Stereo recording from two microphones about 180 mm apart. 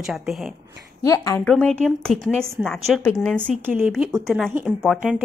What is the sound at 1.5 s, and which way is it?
A woman's voice, 5° left (ahead or behind).